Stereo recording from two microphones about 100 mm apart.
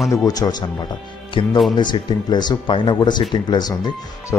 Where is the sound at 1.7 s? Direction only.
45° left (ahead or behind).